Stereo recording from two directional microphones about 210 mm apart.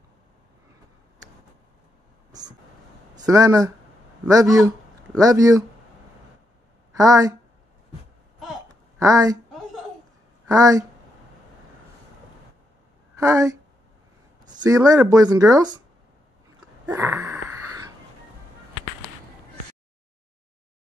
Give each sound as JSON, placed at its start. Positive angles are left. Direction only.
{"t": 3.2, "sound": "speech", "side_deg": -15}
{"t": 7.0, "sound": "speech", "side_deg": -15}
{"t": 8.6, "sound": "a sound", "side_deg": -15}
{"t": 10.4, "sound": "speech", "side_deg": -15}
{"t": 13.2, "sound": "speech", "side_deg": -15}
{"t": 14.6, "sound": "speech", "side_deg": -15}
{"t": 16.8, "sound": "wheeze", "side_deg": -15}